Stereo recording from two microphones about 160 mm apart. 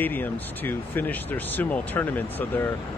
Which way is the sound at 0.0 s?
10° left (ahead or behind).